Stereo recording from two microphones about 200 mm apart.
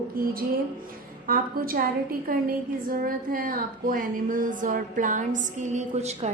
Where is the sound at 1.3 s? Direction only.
45° right (ahead or behind).